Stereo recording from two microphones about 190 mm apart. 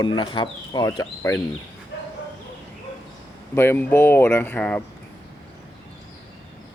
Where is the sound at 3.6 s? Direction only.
15° left (ahead or behind).